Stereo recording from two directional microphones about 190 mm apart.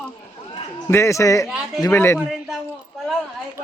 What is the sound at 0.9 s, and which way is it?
Speech, 15° left (ahead or behind).